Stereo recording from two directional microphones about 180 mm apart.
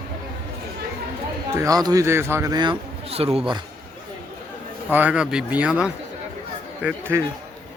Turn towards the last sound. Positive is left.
turn(degrees=-10)  # may be behind; listen again after turning